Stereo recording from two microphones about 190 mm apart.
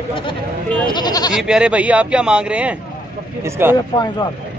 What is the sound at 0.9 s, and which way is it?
Goat, 20° left (ahead or behind).